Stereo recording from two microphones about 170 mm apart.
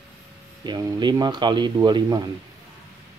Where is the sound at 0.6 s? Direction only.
25° right (ahead or behind).